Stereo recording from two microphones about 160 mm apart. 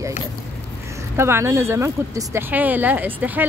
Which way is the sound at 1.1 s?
15° right (ahead or behind).